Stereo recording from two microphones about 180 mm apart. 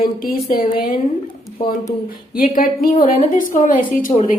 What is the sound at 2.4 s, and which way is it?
A woman's voice, 50° left (ahead or behind).